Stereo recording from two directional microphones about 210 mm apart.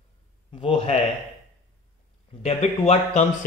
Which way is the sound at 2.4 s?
30° left (ahead or behind).